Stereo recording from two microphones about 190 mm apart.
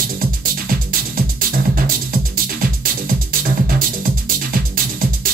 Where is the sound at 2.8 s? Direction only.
50° right (ahead or behind).